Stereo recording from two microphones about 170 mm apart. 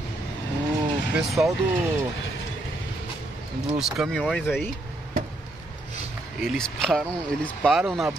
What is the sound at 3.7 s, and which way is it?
Speech, centre (ahead or behind).